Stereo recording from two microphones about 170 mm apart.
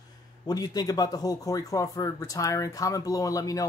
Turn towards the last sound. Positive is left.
turn(degrees=20)  # may be behind; listen again after turning